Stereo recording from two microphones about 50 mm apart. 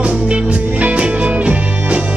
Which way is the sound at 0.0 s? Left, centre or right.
Right.